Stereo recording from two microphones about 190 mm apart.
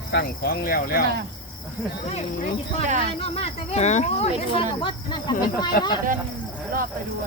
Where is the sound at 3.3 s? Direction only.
35° left (ahead or behind).